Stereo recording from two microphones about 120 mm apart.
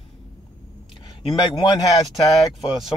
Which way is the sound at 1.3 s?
35° left (ahead or behind).